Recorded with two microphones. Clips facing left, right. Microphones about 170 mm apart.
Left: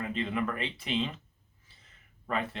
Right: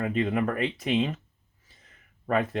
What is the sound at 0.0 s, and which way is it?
Speech, 50° right (ahead or behind).